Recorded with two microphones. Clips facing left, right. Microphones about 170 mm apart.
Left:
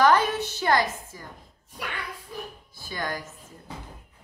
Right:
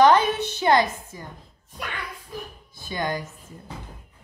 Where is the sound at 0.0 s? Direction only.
20° right (ahead or behind).